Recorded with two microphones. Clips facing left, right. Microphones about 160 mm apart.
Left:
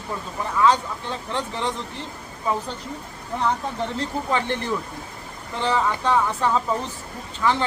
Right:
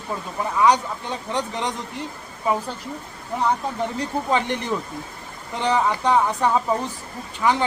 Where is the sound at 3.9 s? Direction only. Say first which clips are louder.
Right 2 dB; 15° right (ahead or behind).